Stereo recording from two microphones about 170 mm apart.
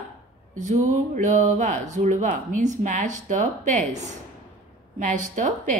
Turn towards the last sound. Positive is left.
turn(degrees=-50)  # may be behind; listen again after turning